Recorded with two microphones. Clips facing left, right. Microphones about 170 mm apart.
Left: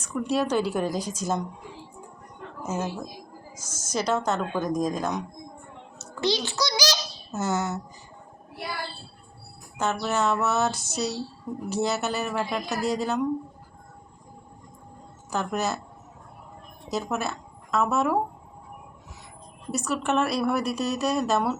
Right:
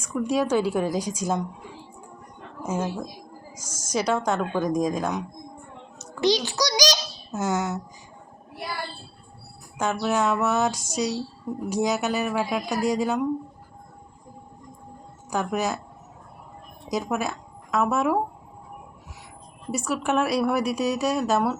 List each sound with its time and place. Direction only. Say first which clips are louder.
0.0 s a woman's voice: right 2 dB; 10° right (ahead or behind)
3.5 s a woman's voice: right 3 dB; 10° right (ahead or behind)
6.0 s a sound: right 4 dB; 15° right (ahead or behind)
7.3 s a woman's voice: right 1 dB; 10° right (ahead or behind)
9.7 s a woman's voice: right 2 dB; 10° right (ahead or behind)
15.3 s a woman's voice: right 2 dB; 10° right (ahead or behind)
16.9 s speech: right 2 dB; 10° right (ahead or behind)
19.7 s a woman's voice: right 1 dB; 10° right (ahead or behind)